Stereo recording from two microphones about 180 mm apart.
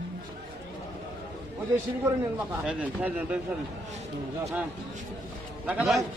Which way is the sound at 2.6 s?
5° right (ahead or behind).